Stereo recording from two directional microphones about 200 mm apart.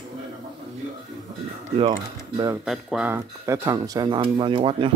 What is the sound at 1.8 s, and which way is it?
Speech, 25° right (ahead or behind).